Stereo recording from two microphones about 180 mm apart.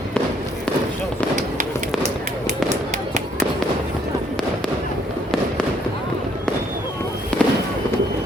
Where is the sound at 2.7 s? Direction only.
40° right (ahead or behind).